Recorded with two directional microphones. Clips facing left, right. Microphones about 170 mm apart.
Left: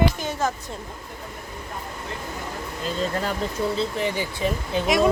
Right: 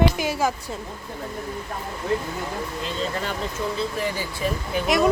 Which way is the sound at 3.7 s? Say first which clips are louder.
Left 2 dB; 20° left (ahead or behind).